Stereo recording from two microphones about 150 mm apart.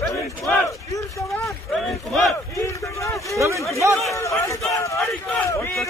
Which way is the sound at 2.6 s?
20° left (ahead or behind).